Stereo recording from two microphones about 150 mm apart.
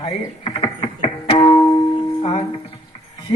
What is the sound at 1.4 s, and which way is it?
Music, 25° left (ahead or behind).